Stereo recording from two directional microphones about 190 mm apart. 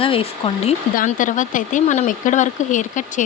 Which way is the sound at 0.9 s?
45° left (ahead or behind).